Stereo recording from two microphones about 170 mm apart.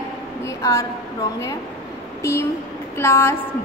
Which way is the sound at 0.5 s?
20° left (ahead or behind).